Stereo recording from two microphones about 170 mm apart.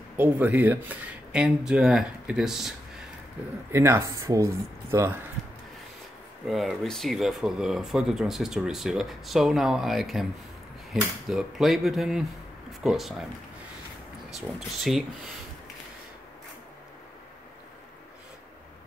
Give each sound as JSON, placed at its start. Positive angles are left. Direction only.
{"t": 0.2, "sound": "speech", "side_deg": -10}
{"t": 3.7, "sound": "speech", "side_deg": -15}
{"t": 6.4, "sound": "speech", "side_deg": 0}
{"t": 14.3, "sound": "speech", "side_deg": 0}